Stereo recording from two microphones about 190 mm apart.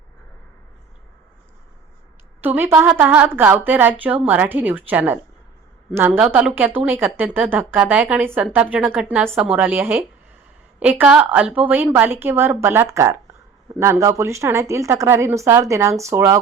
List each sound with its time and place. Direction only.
2.4 s a woman's voice: 10° right (ahead or behind)